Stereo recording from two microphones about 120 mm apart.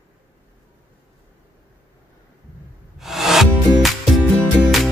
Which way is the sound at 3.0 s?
Centre (ahead or behind).